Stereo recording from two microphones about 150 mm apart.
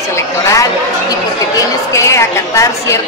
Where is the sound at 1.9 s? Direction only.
20° left (ahead or behind).